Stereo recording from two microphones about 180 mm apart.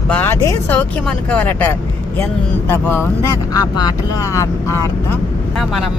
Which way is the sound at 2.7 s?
10° left (ahead or behind).